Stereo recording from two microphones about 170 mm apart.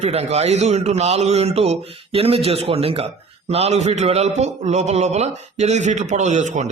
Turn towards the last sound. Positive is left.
turn(degrees=-45)  # may be behind; listen again after turning